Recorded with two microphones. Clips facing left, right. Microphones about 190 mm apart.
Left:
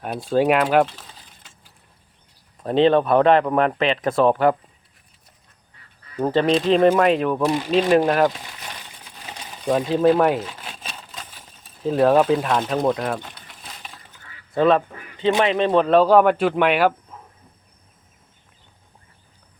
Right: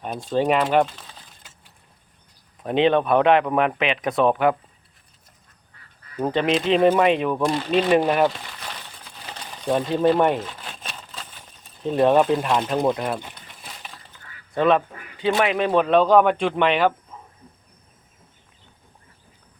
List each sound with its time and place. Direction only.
0.0 s speech: 5° left (ahead or behind)
2.6 s speech: 15° right (ahead or behind)
2.9 s speech: centre (ahead or behind)
3.2 s speech: 10° right (ahead or behind)
6.3 s speech: 15° right (ahead or behind)
6.6 s speech: centre (ahead or behind)
9.6 s a sound: centre (ahead or behind)
11.8 s speech: centre (ahead or behind)
15.4 s speech: 5° right (ahead or behind)